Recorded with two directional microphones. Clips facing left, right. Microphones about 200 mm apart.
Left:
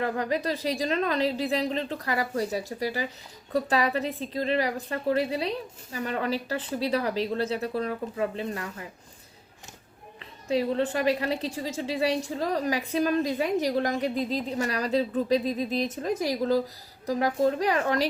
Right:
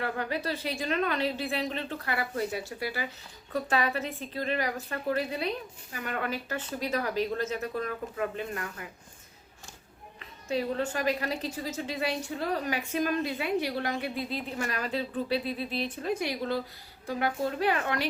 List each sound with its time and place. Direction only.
0.0 s a woman's voice: 35° left (ahead or behind)
10.2 s a woman's voice: 30° left (ahead or behind)